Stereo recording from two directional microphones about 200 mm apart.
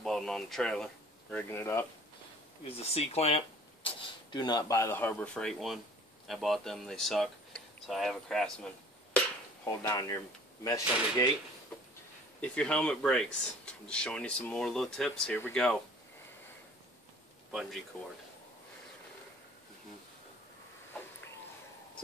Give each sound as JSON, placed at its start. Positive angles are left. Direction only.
{"t": 0.0, "sound": "a sound", "side_deg": 0}
{"t": 1.3, "sound": "speech", "side_deg": 10}
{"t": 2.8, "sound": "speech", "side_deg": 30}
{"t": 9.7, "sound": "speech", "side_deg": 15}
{"t": 12.4, "sound": "speech", "side_deg": 5}
{"t": 17.5, "sound": "speech", "side_deg": 0}